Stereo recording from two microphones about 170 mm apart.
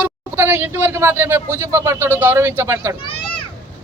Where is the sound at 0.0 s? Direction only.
10° right (ahead or behind).